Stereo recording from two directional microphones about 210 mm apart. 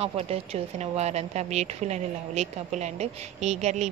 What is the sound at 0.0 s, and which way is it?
A woman's voice, 30° right (ahead or behind).